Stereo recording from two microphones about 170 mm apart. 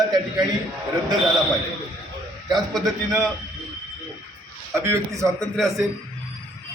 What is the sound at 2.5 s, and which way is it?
Speech, centre (ahead or behind).